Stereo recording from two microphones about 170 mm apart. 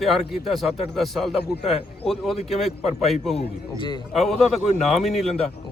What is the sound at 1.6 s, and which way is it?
Speech, 35° left (ahead or behind).